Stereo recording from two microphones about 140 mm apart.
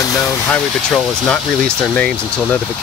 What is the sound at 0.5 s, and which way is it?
Speech, 5° left (ahead or behind).